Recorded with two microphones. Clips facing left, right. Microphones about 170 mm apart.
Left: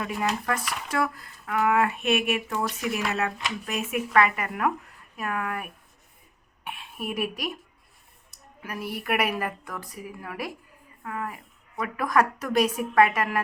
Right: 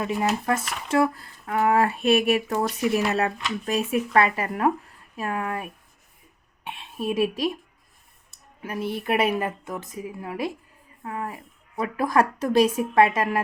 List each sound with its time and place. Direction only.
0.0 s speech: 25° right (ahead or behind)